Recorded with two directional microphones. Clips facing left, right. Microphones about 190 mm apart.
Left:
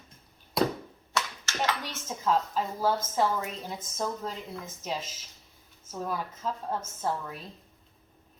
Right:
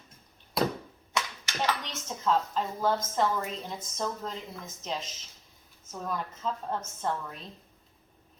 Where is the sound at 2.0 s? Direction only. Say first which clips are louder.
Even; 5° left (ahead or behind).